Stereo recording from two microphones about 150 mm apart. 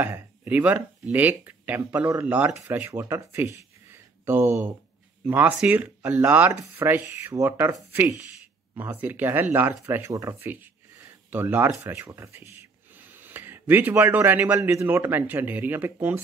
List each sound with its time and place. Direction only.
0.0 s speech: 10° right (ahead or behind)